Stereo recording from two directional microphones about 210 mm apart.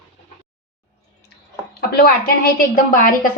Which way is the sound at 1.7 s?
45° left (ahead or behind).